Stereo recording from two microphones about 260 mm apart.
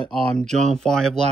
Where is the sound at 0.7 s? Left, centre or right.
Centre.